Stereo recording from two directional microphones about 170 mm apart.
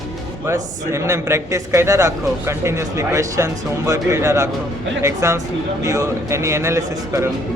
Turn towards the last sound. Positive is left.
turn(degrees=-15)  # may be behind; listen again after turning